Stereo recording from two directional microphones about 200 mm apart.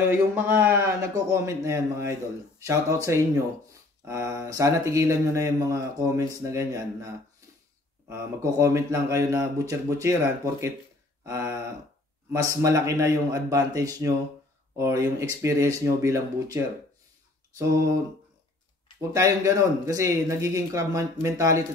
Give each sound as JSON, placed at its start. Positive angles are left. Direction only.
{"t": 0.1, "sound": "speech", "side_deg": -10}
{"t": 8.1, "sound": "speech", "side_deg": -15}
{"t": 18.9, "sound": "speech", "side_deg": -15}